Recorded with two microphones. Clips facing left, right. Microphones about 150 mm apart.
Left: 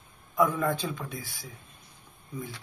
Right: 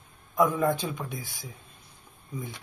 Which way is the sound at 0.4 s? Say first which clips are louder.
Right 2 dB; 20° right (ahead or behind).